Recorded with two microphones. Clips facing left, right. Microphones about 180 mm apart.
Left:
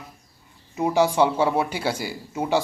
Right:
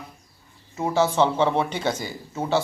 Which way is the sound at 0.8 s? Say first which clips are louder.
Left 1 dB; 15° left (ahead or behind).